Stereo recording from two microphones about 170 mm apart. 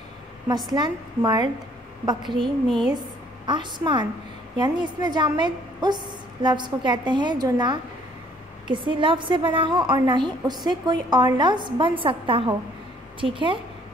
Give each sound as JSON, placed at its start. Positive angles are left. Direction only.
{"t": 0.7, "sound": "a woman's voice", "side_deg": -25}